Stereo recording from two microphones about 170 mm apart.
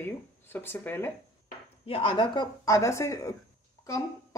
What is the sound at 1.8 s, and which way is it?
Speech, 30° left (ahead or behind).